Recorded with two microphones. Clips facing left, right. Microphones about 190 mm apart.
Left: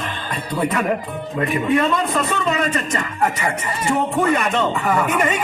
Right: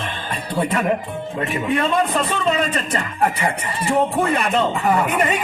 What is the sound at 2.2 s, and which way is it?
Speech, 30° right (ahead or behind).